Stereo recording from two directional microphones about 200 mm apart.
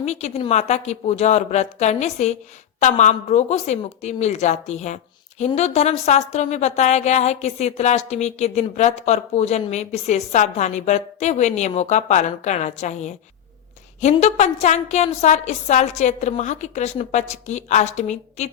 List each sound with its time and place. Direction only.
0.0 s a woman's voice: 35° left (ahead or behind)